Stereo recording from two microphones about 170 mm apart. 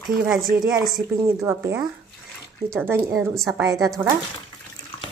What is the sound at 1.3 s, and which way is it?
Speech, 15° right (ahead or behind).